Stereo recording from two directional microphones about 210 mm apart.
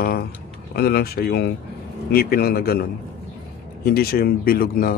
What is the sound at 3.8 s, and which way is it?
Speech, 45° left (ahead or behind).